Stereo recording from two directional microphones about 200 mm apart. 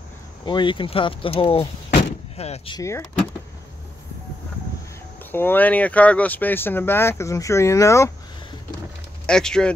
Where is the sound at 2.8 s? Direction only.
15° left (ahead or behind).